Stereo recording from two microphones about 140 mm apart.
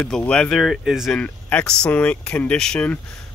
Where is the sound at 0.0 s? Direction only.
10° left (ahead or behind).